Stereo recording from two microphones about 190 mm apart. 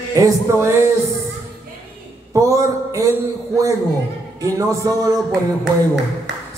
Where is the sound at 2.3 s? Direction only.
15° right (ahead or behind).